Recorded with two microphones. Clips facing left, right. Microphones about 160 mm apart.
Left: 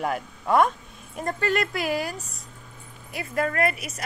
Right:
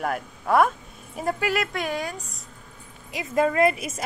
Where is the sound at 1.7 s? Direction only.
5° left (ahead or behind).